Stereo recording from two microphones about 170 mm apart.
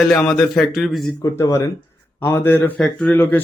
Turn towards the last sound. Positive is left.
turn(degrees=10)  # may be behind; listen again after turning